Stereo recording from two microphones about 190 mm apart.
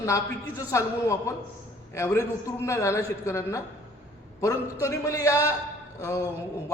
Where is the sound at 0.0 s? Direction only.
15° left (ahead or behind).